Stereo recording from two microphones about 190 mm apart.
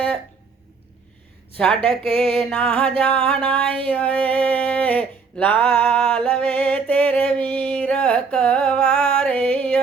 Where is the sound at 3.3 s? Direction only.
5° left (ahead or behind).